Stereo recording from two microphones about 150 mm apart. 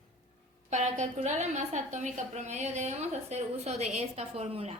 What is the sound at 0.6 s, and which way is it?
A woman's voice, 50° right (ahead or behind).